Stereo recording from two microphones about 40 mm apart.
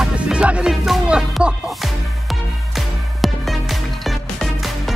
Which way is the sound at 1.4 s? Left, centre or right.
Right.